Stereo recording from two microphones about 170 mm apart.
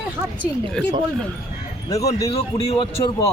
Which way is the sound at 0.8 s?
5° left (ahead or behind).